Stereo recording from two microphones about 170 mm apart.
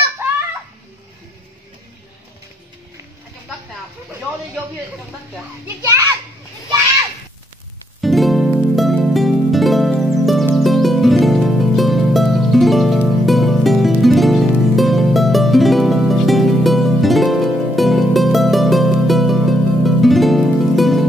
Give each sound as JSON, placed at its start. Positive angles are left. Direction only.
{"t": 0.2, "sound": "a sound", "side_deg": -15}
{"t": 5.9, "sound": "children playing", "side_deg": -15}
{"t": 8.0, "sound": "music", "side_deg": 0}